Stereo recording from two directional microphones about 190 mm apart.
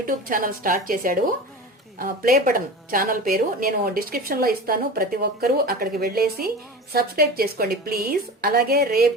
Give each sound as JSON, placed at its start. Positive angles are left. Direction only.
{"t": 0.0, "sound": "a woman's voice", "side_deg": -45}